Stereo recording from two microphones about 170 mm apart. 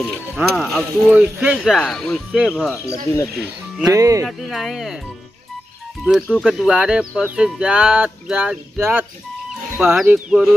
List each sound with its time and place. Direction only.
0.4 s speech: centre (ahead or behind)
2.7 s speech: 15° left (ahead or behind)
3.9 s speech: 20° right (ahead or behind)
4.3 s speech: centre (ahead or behind)
6.0 s speech: centre (ahead or behind)
9.5 s music: 5° right (ahead or behind)
10.0 s speech: 5° right (ahead or behind)